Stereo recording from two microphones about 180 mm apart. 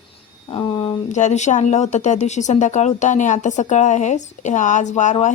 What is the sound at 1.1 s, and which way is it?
A woman's voice, 40° left (ahead or behind).